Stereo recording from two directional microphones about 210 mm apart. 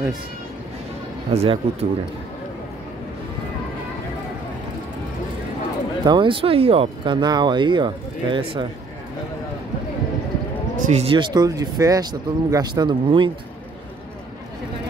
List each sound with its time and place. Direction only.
1.3 s speech: 30° right (ahead or behind)
6.0 s speech: 25° right (ahead or behind)
10.8 s speech: 30° right (ahead or behind)